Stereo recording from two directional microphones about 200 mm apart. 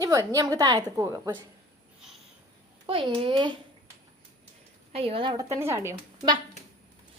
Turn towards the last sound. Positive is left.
turn(degrees=-15)  # may be behind; listen again after turning